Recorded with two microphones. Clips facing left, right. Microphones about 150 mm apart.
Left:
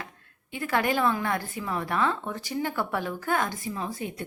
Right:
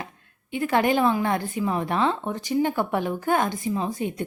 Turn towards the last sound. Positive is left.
turn(degrees=-20)  # may be behind; listen again after turning